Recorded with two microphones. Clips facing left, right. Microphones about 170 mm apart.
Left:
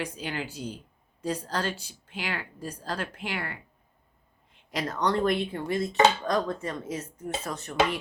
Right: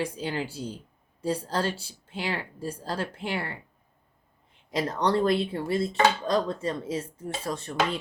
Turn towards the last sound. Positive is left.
turn(degrees=-30)  # may be behind; listen again after turning